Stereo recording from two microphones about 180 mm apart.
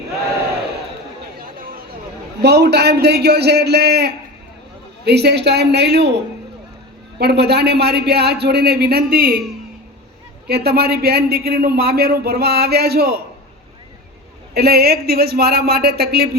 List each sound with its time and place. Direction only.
1.4 s chatter: 50° right (ahead or behind)
2.4 s a man's voice: 65° right (ahead or behind)
10.4 s a man's voice: 60° right (ahead or behind)
14.5 s a man's voice: 60° right (ahead or behind)